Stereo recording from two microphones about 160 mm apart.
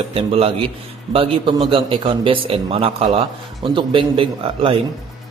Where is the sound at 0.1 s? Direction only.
35° right (ahead or behind).